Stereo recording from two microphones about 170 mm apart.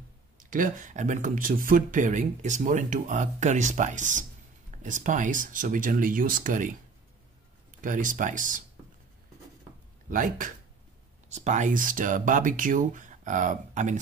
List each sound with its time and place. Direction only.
0.4 s speech: 50° right (ahead or behind)
7.8 s speech: 50° right (ahead or behind)
10.0 s speech: 50° right (ahead or behind)